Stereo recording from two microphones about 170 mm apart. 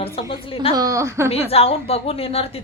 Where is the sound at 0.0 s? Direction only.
35° left (ahead or behind).